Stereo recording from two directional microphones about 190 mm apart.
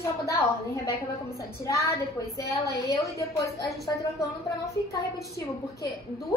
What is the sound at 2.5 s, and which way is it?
A woman's voice, 15° left (ahead or behind).